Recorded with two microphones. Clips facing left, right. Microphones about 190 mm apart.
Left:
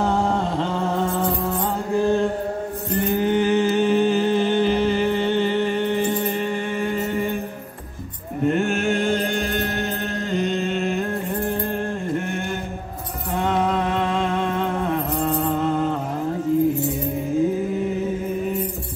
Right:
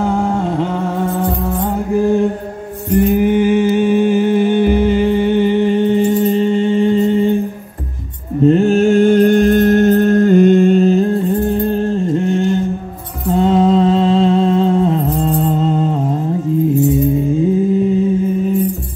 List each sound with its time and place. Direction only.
0.0 s a sound: 5° right (ahead or behind)
2.9 s music: 10° right (ahead or behind)
8.5 s music: 30° right (ahead or behind)